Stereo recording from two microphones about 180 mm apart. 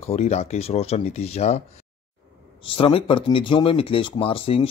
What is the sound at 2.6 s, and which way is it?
Speech, 30° left (ahead or behind).